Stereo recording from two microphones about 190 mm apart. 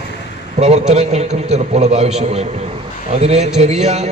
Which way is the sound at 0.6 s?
35° right (ahead or behind).